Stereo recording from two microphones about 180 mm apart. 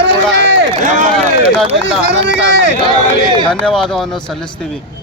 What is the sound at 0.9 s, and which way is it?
Speech, 45° right (ahead or behind).